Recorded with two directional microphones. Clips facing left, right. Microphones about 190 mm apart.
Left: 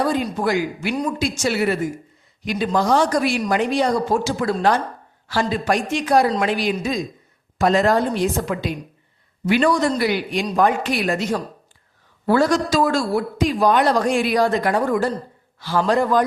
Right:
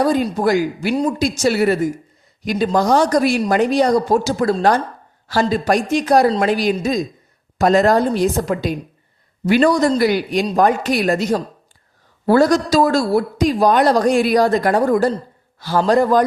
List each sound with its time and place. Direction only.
0.0 s a man's voice: 40° right (ahead or behind)